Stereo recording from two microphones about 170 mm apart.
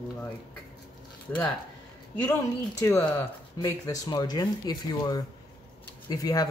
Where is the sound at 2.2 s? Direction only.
15° left (ahead or behind).